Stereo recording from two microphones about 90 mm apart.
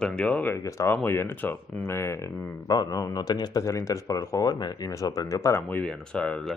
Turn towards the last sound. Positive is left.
turn(degrees=10)  # may be behind; listen again after turning